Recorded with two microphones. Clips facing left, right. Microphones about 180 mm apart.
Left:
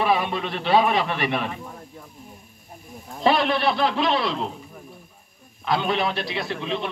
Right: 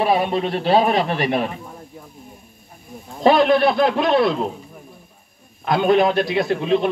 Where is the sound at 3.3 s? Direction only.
45° right (ahead or behind).